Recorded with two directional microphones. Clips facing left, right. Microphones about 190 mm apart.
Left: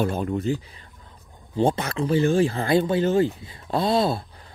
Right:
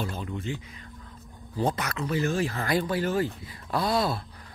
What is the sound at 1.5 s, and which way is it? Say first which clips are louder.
Speech: left 6 dB; 30° left (ahead or behind).